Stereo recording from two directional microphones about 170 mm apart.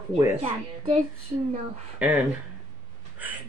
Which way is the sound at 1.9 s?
10° right (ahead or behind).